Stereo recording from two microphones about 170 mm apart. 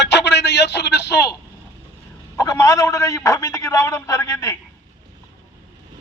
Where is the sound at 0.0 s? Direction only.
90° left.